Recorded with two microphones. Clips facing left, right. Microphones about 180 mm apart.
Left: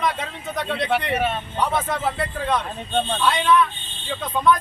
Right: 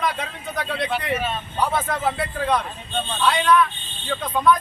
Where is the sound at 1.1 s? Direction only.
60° left (ahead or behind).